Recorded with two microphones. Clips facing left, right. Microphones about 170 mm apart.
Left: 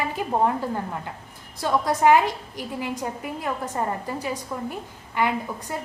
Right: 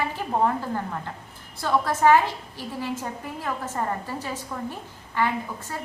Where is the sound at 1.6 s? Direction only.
15° left (ahead or behind).